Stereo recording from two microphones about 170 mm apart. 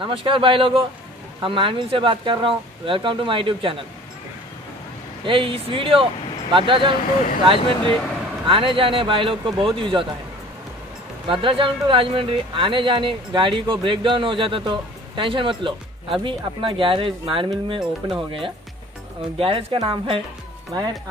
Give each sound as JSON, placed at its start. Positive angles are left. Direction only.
{"t": 0.0, "sound": "speech", "side_deg": -30}
{"t": 5.2, "sound": "speech", "side_deg": -30}
{"t": 11.2, "sound": "speech", "side_deg": -30}
{"t": 19.3, "sound": "speech", "side_deg": -30}